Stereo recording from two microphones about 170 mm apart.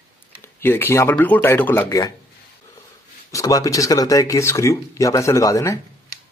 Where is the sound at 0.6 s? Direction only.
10° left (ahead or behind).